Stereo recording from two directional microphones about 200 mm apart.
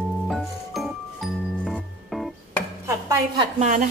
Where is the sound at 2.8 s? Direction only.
15° right (ahead or behind).